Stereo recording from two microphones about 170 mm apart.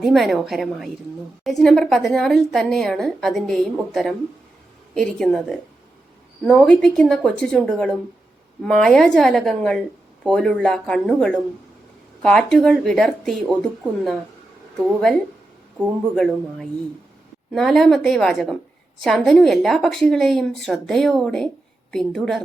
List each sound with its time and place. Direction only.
0.0 s a woman's voice: centre (ahead or behind)
6.7 s a woman's voice: 5° left (ahead or behind)